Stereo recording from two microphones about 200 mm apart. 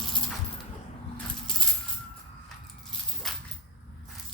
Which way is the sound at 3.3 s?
Centre (ahead or behind).